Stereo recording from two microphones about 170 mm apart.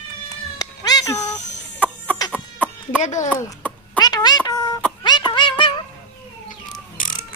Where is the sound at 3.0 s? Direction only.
45° left (ahead or behind).